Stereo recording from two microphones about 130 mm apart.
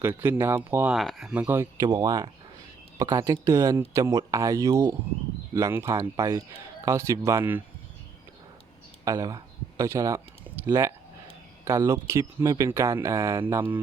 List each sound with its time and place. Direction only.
0.0 s speech: 15° right (ahead or behind)
0.9 s speech: centre (ahead or behind)
1.8 s speech: 30° right (ahead or behind)
9.0 s speech: 25° right (ahead or behind)